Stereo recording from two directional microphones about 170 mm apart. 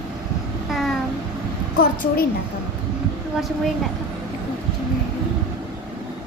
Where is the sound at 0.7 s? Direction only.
Centre (ahead or behind).